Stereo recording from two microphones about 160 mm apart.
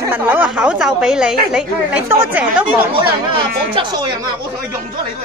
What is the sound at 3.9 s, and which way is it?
Speech, 25° right (ahead or behind).